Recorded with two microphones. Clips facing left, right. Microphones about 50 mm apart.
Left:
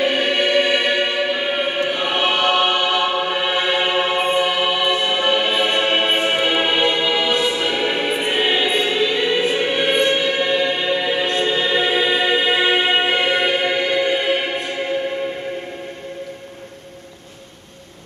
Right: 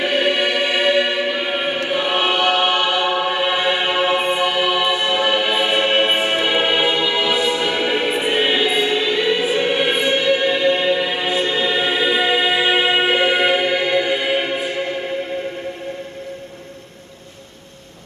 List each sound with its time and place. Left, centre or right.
0.0 s choir: centre
11.2 s music: centre